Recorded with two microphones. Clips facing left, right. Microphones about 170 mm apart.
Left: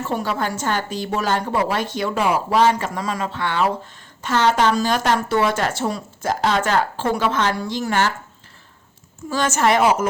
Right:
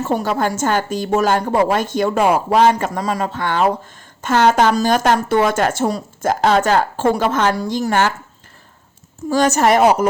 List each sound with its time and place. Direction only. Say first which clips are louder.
0.0 s a woman's voice: right 5 dB; 40° right (ahead or behind)
9.3 s a woman's voice: right 4 dB; 40° right (ahead or behind)